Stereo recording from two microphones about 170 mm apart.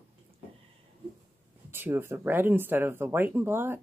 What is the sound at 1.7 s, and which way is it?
Speech, 15° right (ahead or behind).